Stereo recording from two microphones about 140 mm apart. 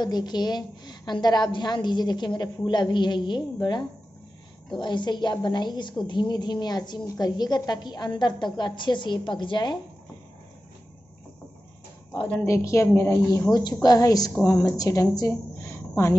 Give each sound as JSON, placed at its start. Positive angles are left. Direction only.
{"t": 0.0, "sound": "a woman's voice", "side_deg": 30}
{"t": 12.4, "sound": "a woman's voice", "side_deg": 20}